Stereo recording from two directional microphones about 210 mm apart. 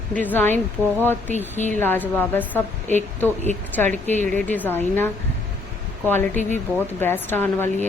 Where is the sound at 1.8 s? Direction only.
10° left (ahead or behind).